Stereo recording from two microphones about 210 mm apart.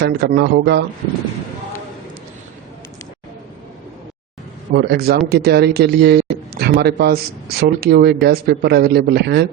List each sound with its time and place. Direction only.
0.0 s a man's voice: 50° right (ahead or behind)
4.7 s a man's voice: 50° right (ahead or behind)